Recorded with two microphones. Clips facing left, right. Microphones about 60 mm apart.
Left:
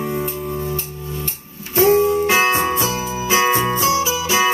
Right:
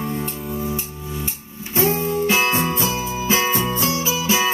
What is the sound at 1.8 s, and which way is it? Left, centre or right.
Music, left.